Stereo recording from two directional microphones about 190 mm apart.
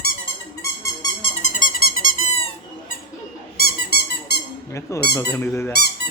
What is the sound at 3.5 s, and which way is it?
Squeak, 55° left (ahead or behind).